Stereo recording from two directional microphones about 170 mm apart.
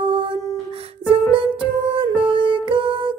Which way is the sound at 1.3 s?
30° right (ahead or behind).